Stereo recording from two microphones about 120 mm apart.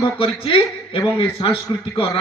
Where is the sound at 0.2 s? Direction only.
50° left (ahead or behind).